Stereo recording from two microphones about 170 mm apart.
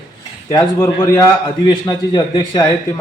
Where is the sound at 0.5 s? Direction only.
15° left (ahead or behind).